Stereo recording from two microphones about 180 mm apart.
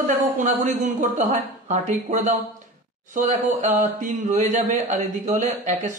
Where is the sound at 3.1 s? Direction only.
45° right (ahead or behind).